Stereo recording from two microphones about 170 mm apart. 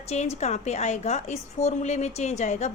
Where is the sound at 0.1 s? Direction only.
40° left (ahead or behind).